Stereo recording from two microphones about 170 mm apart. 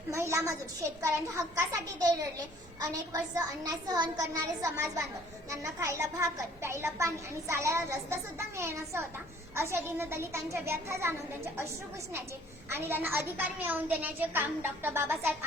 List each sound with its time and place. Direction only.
0.1 s a child's voice: 15° right (ahead or behind)
12.7 s a child's voice: 15° right (ahead or behind)